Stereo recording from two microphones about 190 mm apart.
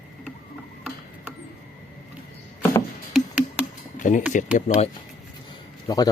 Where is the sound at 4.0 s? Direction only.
40° left (ahead or behind).